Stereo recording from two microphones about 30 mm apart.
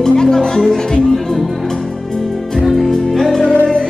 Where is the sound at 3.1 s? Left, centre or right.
Centre.